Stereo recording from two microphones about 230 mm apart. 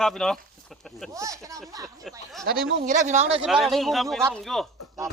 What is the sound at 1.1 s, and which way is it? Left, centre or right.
Speech, centre.